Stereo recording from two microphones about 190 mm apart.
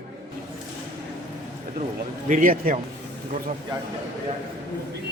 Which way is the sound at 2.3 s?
45° right (ahead or behind).